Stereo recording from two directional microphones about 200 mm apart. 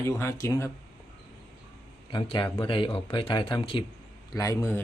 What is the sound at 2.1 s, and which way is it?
Speech, 25° left (ahead or behind).